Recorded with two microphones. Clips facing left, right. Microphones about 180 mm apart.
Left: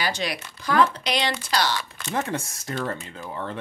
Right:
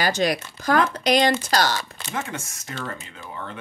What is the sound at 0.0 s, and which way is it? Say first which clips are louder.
Speech: right 6 dB; 45° right (ahead or behind).